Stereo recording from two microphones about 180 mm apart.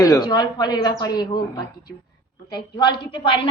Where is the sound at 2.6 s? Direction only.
25° left (ahead or behind).